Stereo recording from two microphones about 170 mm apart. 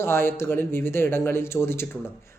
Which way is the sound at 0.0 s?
15° left (ahead or behind).